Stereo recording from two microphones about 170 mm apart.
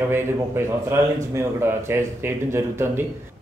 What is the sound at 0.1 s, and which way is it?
Speech, 15° right (ahead or behind).